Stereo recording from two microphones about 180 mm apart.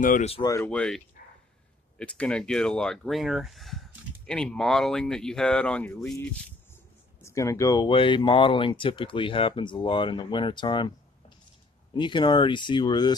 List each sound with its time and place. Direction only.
0.0 s speech: 50° left (ahead or behind)
0.3 s speech: 20° left (ahead or behind)
0.7 s speech: 5° left (ahead or behind)
7.2 s speech: 15° left (ahead or behind)